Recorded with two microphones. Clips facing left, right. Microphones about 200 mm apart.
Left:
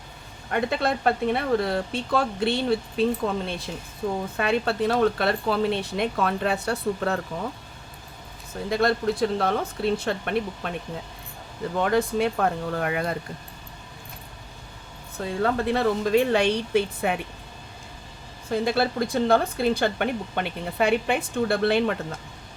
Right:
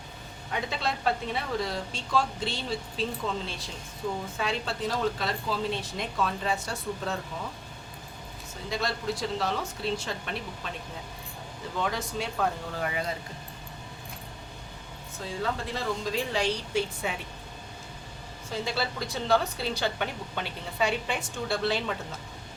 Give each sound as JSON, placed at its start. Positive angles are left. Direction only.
{"t": 0.5, "sound": "a woman's voice", "side_deg": 55}
{"t": 8.7, "sound": "a woman's voice", "side_deg": 55}
{"t": 11.8, "sound": "a woman's voice", "side_deg": 55}
{"t": 15.2, "sound": "a woman's voice", "side_deg": 60}
{"t": 18.5, "sound": "a woman's voice", "side_deg": 55}